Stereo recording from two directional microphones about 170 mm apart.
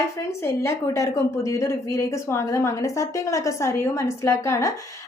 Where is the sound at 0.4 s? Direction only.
15° left (ahead or behind).